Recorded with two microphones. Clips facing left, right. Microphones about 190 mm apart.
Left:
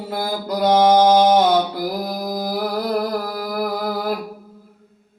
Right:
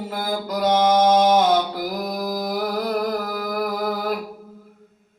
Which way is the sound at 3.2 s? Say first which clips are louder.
Left 1 dB; 35° left (ahead or behind).